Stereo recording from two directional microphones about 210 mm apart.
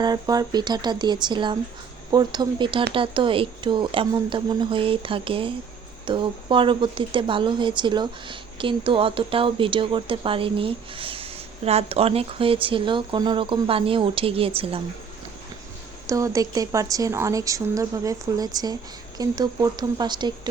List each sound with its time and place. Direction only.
0.0 s a woman's voice: 20° right (ahead or behind)
16.0 s a woman's voice: 15° right (ahead or behind)